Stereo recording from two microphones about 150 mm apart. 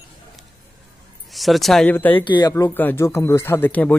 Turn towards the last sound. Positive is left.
turn(degrees=10)  # may be behind; listen again after turning